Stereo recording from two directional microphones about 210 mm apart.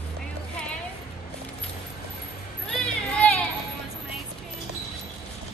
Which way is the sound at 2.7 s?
5° left (ahead or behind).